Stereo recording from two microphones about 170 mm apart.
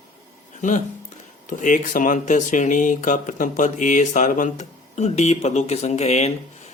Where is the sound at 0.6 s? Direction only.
45° left (ahead or behind).